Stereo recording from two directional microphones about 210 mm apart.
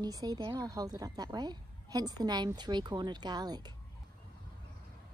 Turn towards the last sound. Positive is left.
turn(degrees=-20)  # may be behind; listen again after turning